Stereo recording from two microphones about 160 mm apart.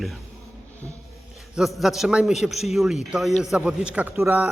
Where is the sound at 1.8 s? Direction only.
Centre (ahead or behind).